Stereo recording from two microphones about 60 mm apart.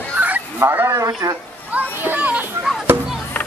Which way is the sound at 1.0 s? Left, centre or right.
Right.